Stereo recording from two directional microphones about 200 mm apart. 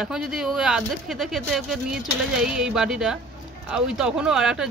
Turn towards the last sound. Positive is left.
turn(degrees=-5)  # may be behind; listen again after turning